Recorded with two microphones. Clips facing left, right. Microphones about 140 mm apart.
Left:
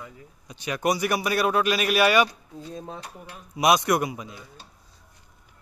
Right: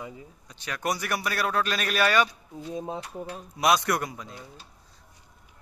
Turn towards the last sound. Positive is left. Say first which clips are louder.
# left 4 dB
turn(degrees=15)  # may be behind; listen again after turning